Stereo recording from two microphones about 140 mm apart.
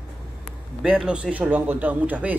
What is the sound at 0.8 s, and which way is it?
Speech, 5° right (ahead or behind).